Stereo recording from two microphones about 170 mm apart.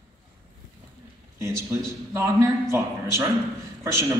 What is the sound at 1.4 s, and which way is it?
A man's voice, 15° right (ahead or behind).